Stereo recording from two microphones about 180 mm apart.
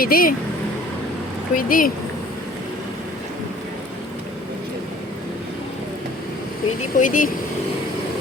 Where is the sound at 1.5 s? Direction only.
50° left (ahead or behind).